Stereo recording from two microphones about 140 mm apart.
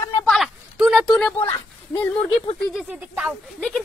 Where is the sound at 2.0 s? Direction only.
10° left (ahead or behind).